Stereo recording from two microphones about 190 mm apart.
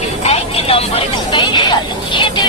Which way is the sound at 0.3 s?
30° left (ahead or behind).